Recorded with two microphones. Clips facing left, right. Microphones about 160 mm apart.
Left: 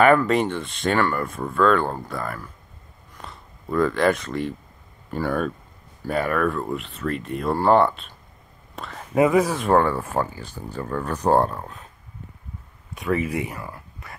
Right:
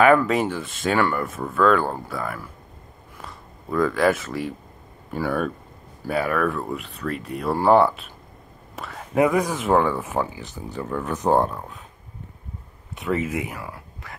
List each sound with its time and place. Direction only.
0.0 s speech: centre (ahead or behind)
3.2 s a sound: centre (ahead or behind)
5.1 s speech: 5° right (ahead or behind)
10.1 s speech: 5° left (ahead or behind)
10.7 s speech: 10° right (ahead or behind)
13.3 s speech: 5° right (ahead or behind)